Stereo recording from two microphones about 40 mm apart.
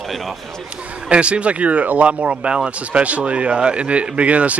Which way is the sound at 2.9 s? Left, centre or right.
Right.